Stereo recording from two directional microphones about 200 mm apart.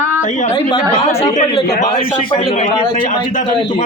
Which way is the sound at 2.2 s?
25° left (ahead or behind).